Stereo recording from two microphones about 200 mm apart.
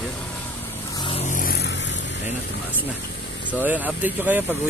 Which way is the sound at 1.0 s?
35° left (ahead or behind).